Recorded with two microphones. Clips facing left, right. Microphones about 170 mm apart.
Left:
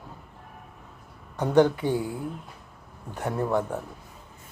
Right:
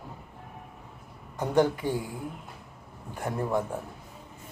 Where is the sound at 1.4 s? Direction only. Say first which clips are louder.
Left 4 dB; 10° right (ahead or behind).